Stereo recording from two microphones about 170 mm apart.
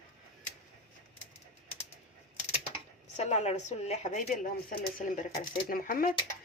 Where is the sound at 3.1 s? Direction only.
40° left (ahead or behind).